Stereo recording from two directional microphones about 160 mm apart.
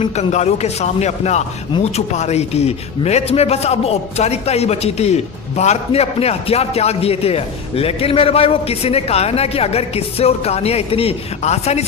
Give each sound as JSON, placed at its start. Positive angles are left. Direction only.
{"t": 0.0, "sound": "a man's voice", "side_deg": 45}